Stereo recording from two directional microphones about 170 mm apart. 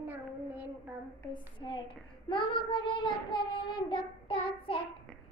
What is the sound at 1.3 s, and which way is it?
A child's voice, 25° left (ahead or behind).